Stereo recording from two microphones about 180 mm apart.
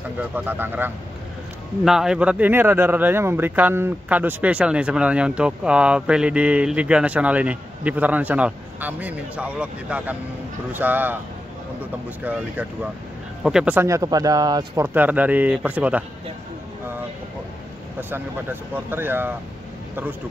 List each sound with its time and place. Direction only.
0.3 s speech: 10° right (ahead or behind)
15.0 s speech: 10° right (ahead or behind)
18.1 s speech: 10° right (ahead or behind)